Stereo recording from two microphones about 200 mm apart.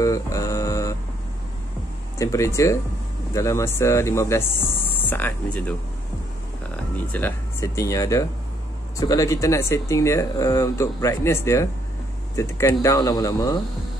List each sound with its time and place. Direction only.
0.0 s a sound: 15° left (ahead or behind)
2.1 s speech: 15° left (ahead or behind)
7.1 s speech: 10° left (ahead or behind)